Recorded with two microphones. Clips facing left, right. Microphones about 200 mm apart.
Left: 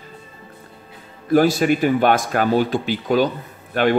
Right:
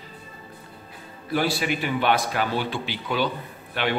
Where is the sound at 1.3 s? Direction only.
45° left (ahead or behind).